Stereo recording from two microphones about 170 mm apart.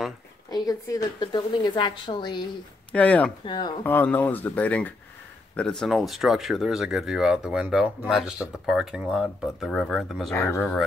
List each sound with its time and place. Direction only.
0.5 s a woman's voice: 20° left (ahead or behind)
2.9 s speech: 10° left (ahead or behind)
3.4 s a woman's voice: 25° left (ahead or behind)
3.8 s speech: 10° left (ahead or behind)
10.3 s speech: 15° left (ahead or behind)